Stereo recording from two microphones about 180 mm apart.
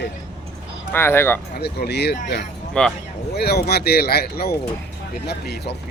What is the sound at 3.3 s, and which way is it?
Speech, 60° left (ahead or behind).